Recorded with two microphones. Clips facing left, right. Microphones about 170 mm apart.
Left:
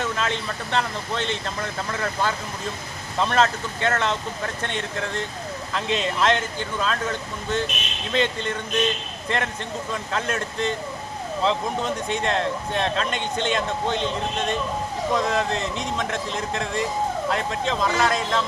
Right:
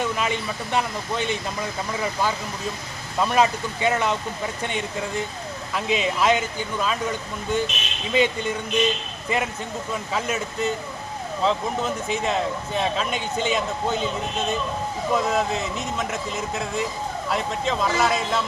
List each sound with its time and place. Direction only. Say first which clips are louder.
0.0 s speech: right 1 dB; 10° right (ahead or behind)